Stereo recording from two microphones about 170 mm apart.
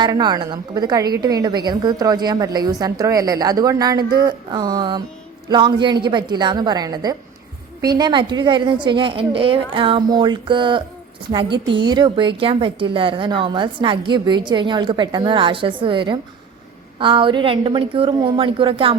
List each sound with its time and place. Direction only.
0.0 s a woman's voice: 25° right (ahead or behind)